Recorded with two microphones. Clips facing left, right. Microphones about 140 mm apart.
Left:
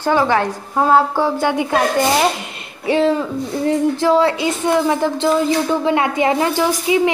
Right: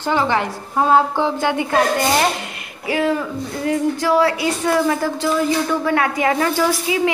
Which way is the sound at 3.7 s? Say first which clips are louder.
Left 2 dB; 25° left (ahead or behind).